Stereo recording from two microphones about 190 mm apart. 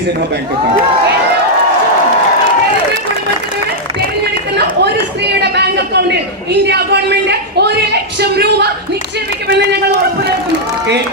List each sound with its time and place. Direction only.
4.5 s chatter: 60° right (ahead or behind)
6.5 s a man's voice: 60° right (ahead or behind)